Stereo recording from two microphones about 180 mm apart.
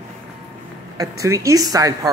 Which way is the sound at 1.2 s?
15° right (ahead or behind).